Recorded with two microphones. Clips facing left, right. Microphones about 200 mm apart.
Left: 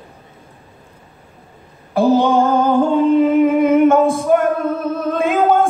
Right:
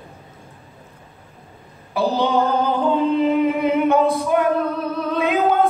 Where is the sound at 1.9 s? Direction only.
50° left (ahead or behind).